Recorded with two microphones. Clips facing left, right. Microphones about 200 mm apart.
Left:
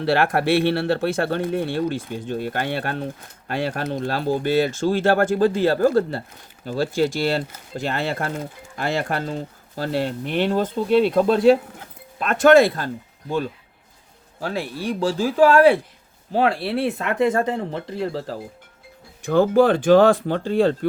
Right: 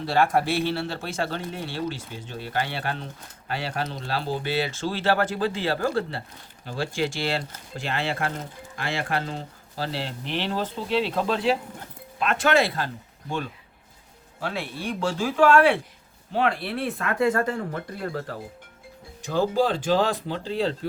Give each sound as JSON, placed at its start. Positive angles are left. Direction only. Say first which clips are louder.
{"t": 0.0, "sound": "speech", "louder": "left 3 dB", "side_deg": 70}
{"t": 14.3, "sound": "speech", "louder": "left 4 dB", "side_deg": 40}
{"t": 19.2, "sound": "speech", "louder": "left 7 dB", "side_deg": 55}